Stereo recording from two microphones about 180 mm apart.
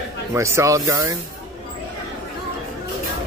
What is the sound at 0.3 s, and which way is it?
Speech, 15° right (ahead or behind).